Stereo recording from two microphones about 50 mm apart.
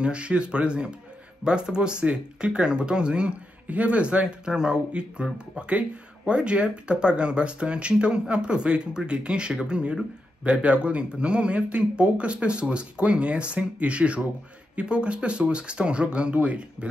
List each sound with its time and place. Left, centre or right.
0.0 s speech: right